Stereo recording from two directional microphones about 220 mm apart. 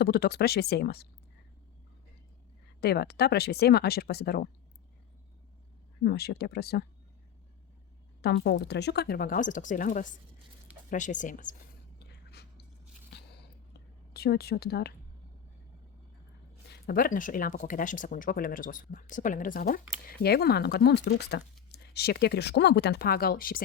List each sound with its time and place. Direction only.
0.0 s speech: 45° left (ahead or behind)
2.8 s speech: 45° left (ahead or behind)
6.0 s speech: 45° left (ahead or behind)
8.2 s speech: 45° left (ahead or behind)
13.1 s biting: 50° left (ahead or behind)
14.1 s speech: 45° left (ahead or behind)
16.7 s speech: 45° left (ahead or behind)